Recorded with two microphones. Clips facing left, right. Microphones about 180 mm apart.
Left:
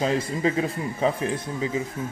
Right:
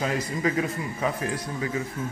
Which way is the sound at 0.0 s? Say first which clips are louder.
Left 3 dB; 25° left (ahead or behind).